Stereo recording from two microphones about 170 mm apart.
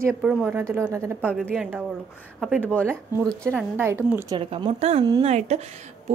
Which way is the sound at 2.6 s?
10° left (ahead or behind).